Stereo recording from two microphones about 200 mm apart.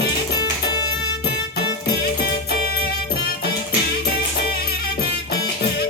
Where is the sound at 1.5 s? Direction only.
50° left (ahead or behind).